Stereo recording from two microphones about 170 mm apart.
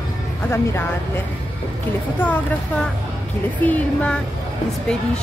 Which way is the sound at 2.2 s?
10° left (ahead or behind).